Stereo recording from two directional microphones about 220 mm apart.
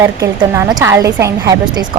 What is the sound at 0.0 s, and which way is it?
Speech, 15° right (ahead or behind).